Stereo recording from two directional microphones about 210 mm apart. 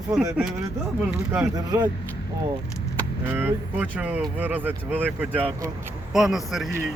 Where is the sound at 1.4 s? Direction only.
20° right (ahead or behind).